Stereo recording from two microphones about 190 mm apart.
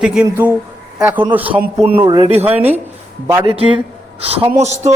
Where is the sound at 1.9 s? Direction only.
25° right (ahead or behind).